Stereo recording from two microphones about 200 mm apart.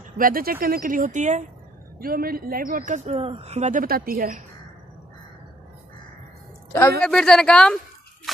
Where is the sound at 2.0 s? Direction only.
45° right (ahead or behind).